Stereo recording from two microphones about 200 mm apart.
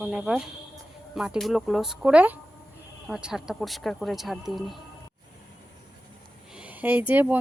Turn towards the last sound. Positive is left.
turn(degrees=-10)  # may be behind; listen again after turning